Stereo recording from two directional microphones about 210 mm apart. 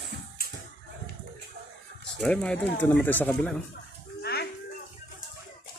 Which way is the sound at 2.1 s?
5° left (ahead or behind).